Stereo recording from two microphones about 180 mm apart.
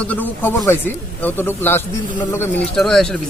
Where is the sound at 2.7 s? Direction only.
5° left (ahead or behind).